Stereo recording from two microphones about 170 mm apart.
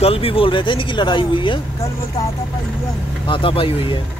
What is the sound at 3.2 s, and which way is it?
Speech, 30° left (ahead or behind).